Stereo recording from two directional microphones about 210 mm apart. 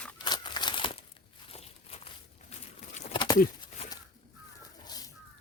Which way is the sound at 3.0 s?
25° left (ahead or behind).